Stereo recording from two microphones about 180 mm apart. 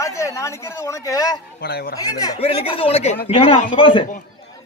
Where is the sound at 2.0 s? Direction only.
20° left (ahead or behind).